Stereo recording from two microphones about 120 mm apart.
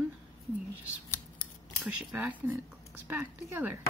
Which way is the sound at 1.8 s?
10° right (ahead or behind).